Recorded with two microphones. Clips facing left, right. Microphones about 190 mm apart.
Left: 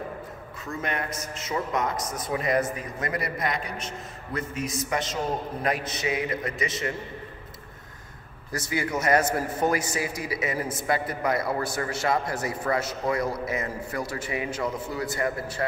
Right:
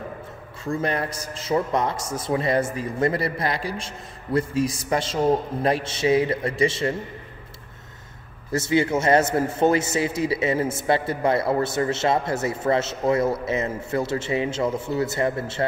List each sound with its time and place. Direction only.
0.7 s a man's voice: 30° right (ahead or behind)
8.5 s a man's voice: 25° right (ahead or behind)